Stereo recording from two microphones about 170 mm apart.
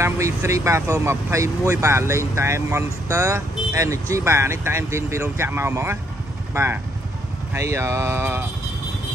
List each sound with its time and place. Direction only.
0.0 s speech: 15° right (ahead or behind)